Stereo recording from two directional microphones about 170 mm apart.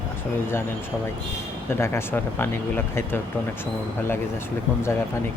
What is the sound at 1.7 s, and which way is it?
Speech, 15° left (ahead or behind).